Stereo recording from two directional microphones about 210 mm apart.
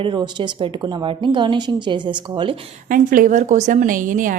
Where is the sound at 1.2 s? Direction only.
25° right (ahead or behind).